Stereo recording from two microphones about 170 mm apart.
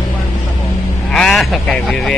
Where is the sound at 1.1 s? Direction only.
5° left (ahead or behind).